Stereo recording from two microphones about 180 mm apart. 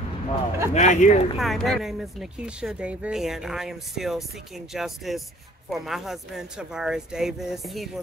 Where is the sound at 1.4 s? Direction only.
Centre (ahead or behind).